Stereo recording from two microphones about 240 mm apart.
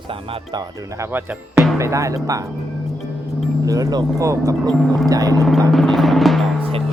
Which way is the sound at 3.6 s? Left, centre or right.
Centre.